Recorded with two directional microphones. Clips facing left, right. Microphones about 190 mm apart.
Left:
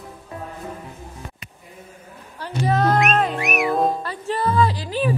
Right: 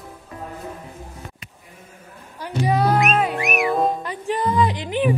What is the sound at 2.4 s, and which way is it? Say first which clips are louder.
Music: even; 10° right (ahead or behind).